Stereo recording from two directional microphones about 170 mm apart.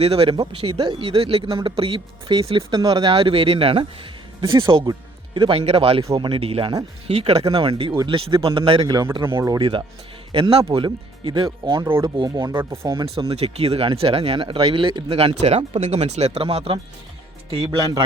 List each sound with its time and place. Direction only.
0.0 s speech: 35° right (ahead or behind)
11.9 s speech: 15° right (ahead or behind)
12.1 s speech: 25° right (ahead or behind)
13.1 s speech: 35° right (ahead or behind)